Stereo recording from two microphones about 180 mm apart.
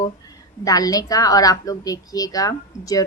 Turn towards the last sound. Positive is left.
turn(degrees=20)  # may be behind; listen again after turning